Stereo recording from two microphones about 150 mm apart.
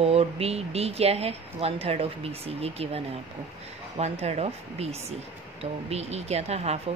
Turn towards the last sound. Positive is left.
turn(degrees=-45)  # may be behind; listen again after turning